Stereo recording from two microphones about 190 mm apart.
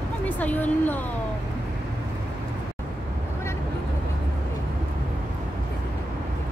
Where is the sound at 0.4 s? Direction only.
10° left (ahead or behind).